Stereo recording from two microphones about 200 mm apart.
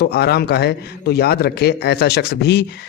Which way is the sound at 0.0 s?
55° left (ahead or behind).